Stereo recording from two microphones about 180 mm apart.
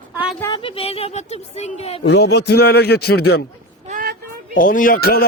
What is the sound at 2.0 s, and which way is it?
Speech, 70° left (ahead or behind).